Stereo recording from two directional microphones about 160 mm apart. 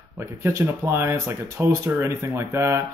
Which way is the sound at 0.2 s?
20° right (ahead or behind).